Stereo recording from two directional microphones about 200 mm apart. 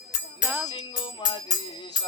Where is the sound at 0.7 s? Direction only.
25° left (ahead or behind).